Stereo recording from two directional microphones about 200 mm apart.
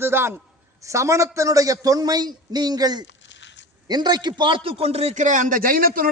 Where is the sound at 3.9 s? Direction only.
20° right (ahead or behind).